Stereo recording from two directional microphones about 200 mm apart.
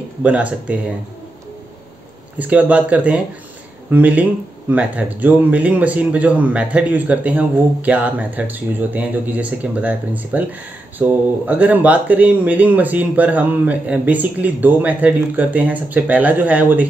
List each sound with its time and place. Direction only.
0.2 s speech: 5° right (ahead or behind)
2.3 s speech: 5° right (ahead or behind)